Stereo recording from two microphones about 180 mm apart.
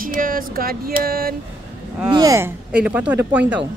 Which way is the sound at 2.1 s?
20° right (ahead or behind).